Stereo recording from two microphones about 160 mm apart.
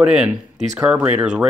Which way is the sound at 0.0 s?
5° right (ahead or behind).